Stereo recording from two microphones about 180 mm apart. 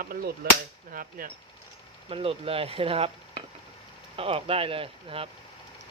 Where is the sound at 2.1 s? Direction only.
30° right (ahead or behind).